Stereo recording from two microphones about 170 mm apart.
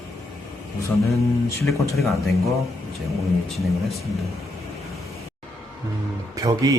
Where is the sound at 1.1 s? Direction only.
Centre (ahead or behind).